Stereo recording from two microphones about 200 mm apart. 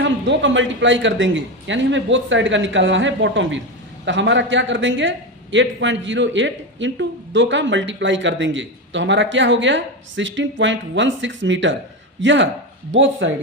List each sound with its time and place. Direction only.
0.0 s a man's voice: 65° right (ahead or behind)